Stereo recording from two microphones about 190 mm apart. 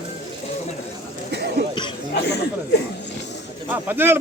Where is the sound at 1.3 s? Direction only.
60° right (ahead or behind).